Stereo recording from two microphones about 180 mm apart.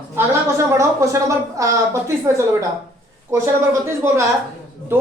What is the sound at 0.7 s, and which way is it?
Speech, 15° right (ahead or behind).